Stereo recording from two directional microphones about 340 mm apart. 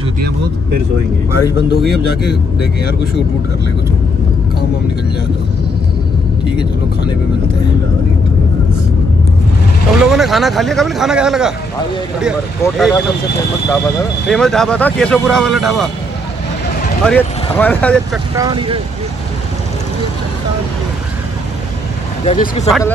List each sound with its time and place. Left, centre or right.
6.5 s speech: centre
9.9 s speech: centre
12.6 s speech: centre
17.0 s speech: centre
18.3 s speech: centre
22.2 s speech: centre
22.7 s speech: centre